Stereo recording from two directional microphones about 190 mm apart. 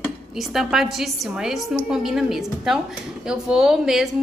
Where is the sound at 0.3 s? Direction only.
Centre (ahead or behind).